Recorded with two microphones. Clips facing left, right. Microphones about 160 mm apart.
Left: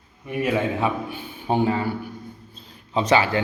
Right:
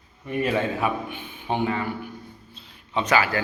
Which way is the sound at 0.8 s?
35° left (ahead or behind).